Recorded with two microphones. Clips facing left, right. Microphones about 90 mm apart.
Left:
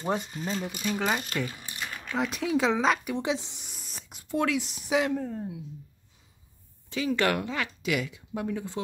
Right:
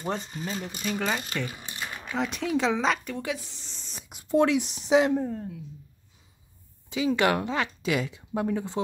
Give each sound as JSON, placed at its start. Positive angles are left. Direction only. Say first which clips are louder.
{"t": 0.3, "sound": "speech", "louder": "left 1 dB", "side_deg": -5}
{"t": 1.0, "sound": "speech", "louder": "left 2 dB", "side_deg": 10}
{"t": 1.5, "sound": "typewriter", "louder": "right 2 dB", "side_deg": -25}
{"t": 2.1, "sound": "speech", "louder": "even", "side_deg": 0}
{"t": 3.2, "sound": "a sound", "louder": "left 3 dB", "side_deg": 20}
{"t": 4.3, "sound": "speech", "louder": "right 5 dB", "side_deg": -25}
{"t": 5.3, "sound": "speech", "louder": "even", "side_deg": 15}
{"t": 6.9, "sound": "speech", "louder": "right 2 dB", "side_deg": -15}